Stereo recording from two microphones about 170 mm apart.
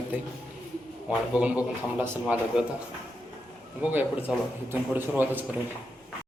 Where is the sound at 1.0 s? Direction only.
5° right (ahead or behind).